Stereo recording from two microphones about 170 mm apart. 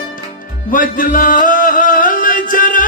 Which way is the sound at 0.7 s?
50° left (ahead or behind).